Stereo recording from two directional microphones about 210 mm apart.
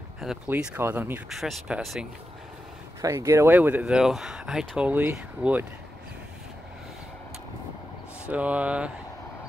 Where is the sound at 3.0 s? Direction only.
15° right (ahead or behind).